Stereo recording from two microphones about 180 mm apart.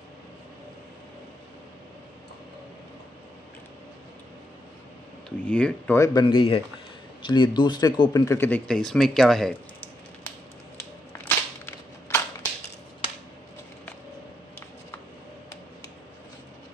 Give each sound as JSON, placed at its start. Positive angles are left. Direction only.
{"t": 5.5, "sound": "speech", "side_deg": 5}
{"t": 5.9, "sound": "speech", "side_deg": 20}
{"t": 11.2, "sound": "whip", "side_deg": 10}